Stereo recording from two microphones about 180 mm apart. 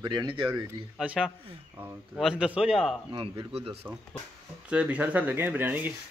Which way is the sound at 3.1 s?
30° right (ahead or behind).